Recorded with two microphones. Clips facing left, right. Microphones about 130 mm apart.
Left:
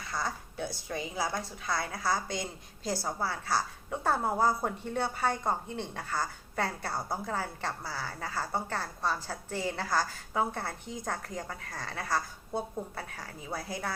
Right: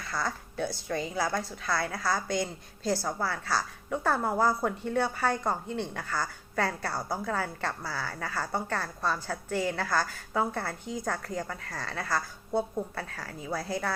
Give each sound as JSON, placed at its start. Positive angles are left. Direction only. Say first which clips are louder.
{"t": 0.1, "sound": "a woman's voice", "louder": "right 2 dB", "side_deg": 25}
{"t": 7.1, "sound": "a woman's voice", "louder": "right 4 dB", "side_deg": -75}
{"t": 7.6, "sound": "a woman's voice", "louder": "right 2 dB", "side_deg": 25}